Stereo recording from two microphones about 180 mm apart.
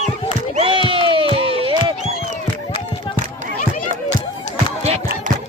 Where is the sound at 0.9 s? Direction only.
30° right (ahead or behind).